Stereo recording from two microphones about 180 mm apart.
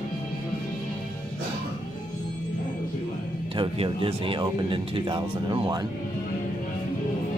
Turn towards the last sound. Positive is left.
turn(degrees=-25)  # may be behind; listen again after turning